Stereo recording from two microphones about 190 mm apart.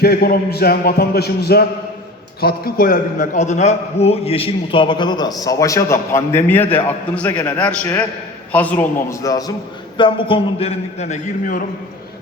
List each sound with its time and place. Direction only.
0.0 s a man's voice: 55° left (ahead or behind)